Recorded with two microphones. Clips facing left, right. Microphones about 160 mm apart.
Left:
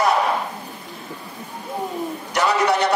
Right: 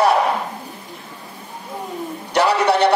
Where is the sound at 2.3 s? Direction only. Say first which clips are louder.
Right 3 dB; 30° right (ahead or behind).